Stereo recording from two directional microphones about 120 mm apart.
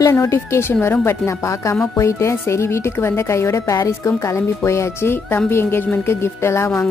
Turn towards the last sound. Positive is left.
turn(degrees=20)  # may be behind; listen again after turning